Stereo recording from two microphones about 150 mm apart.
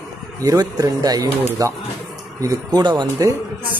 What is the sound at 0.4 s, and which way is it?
A man's voice, 25° right (ahead or behind).